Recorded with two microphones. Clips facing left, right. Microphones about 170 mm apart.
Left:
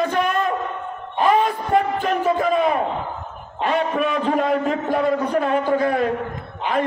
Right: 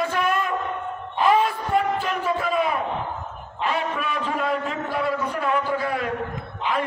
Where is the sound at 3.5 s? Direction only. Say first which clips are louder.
Left 5 dB; 40° left (ahead or behind).